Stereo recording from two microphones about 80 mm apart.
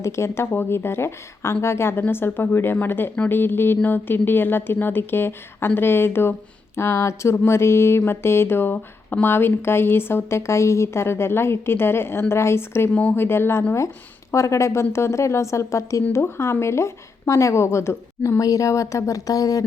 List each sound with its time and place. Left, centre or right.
0.0 s a woman's voice: left
12.9 s speech: centre
13.1 s a woman's voice: left